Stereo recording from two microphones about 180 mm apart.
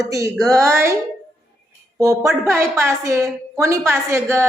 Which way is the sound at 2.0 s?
15° right (ahead or behind).